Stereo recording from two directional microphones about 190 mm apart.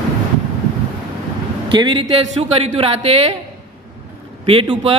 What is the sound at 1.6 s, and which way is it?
Speech, 25° right (ahead or behind).